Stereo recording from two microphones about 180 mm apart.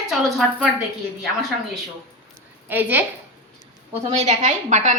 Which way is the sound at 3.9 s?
35° right (ahead or behind).